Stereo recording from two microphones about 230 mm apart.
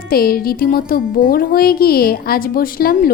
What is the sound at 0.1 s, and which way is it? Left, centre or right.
Speech, left.